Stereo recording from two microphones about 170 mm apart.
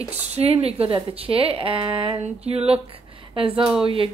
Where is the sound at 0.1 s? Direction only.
40° right (ahead or behind).